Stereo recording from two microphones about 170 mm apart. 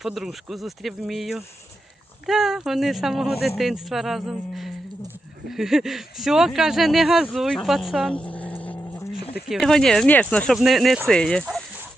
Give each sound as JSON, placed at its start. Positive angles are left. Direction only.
{"t": 0.0, "sound": "speech", "side_deg": 0}